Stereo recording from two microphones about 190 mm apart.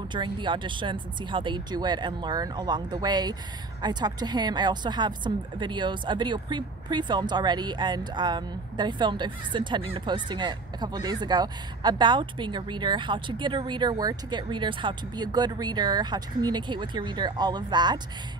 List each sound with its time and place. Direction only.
0.1 s a woman's voice: 25° right (ahead or behind)